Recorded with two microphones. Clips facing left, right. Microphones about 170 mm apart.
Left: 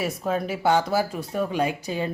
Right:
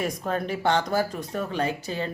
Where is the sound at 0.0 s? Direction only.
5° left (ahead or behind).